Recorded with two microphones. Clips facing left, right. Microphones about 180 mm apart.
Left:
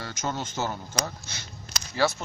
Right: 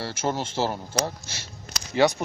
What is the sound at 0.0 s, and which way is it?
Speech, 30° right (ahead or behind).